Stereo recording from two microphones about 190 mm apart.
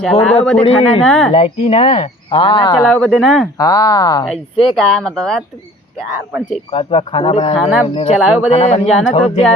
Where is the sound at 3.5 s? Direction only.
20° left (ahead or behind).